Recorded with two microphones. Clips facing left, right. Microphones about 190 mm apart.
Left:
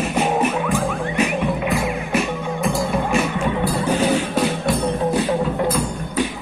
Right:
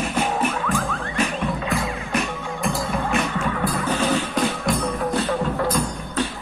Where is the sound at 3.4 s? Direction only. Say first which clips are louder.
Left 3 dB; 20° left (ahead or behind).